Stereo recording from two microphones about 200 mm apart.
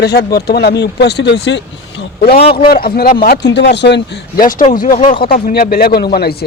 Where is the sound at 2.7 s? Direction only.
50° left (ahead or behind).